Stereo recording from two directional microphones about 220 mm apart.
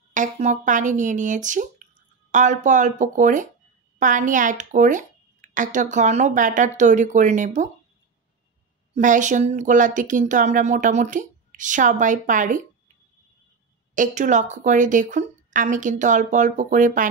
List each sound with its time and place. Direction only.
0.1 s speech: 35° right (ahead or behind)
8.9 s speech: 35° right (ahead or behind)
13.9 s speech: 35° right (ahead or behind)